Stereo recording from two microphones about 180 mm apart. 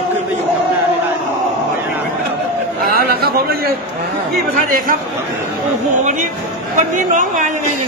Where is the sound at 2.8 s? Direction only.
55° right (ahead or behind).